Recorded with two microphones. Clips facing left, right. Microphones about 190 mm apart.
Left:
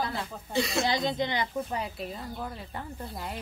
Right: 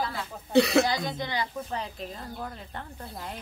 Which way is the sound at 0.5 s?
65° right (ahead or behind).